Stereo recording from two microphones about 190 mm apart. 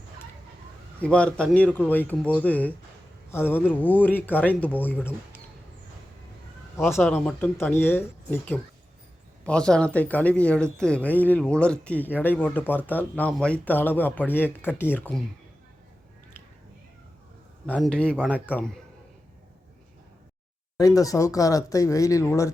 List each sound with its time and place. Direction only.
0.9 s speech: 5° left (ahead or behind)
6.7 s speech: 15° left (ahead or behind)
7.0 s speech: centre (ahead or behind)
17.7 s speech: 5° left (ahead or behind)
20.7 s speech: 20° left (ahead or behind)